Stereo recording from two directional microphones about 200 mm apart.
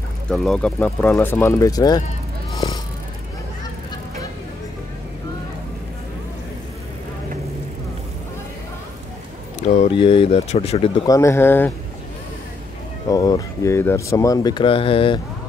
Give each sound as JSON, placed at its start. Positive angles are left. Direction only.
{"t": 0.3, "sound": "speech", "side_deg": 0}
{"t": 2.5, "sound": "vehicle", "side_deg": 15}
{"t": 9.6, "sound": "speech", "side_deg": 35}
{"t": 11.1, "sound": "speech", "side_deg": 15}
{"t": 13.1, "sound": "speech", "side_deg": 20}